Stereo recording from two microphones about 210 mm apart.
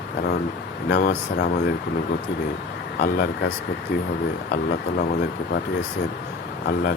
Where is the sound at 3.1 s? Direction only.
50° left (ahead or behind).